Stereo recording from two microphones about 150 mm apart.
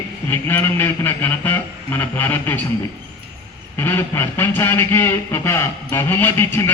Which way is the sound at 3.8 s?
15° left (ahead or behind).